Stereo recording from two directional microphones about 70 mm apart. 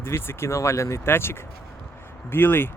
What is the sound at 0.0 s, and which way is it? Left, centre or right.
Speech, left.